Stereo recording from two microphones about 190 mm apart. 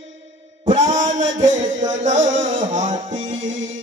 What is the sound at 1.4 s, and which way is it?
Music, 40° right (ahead or behind).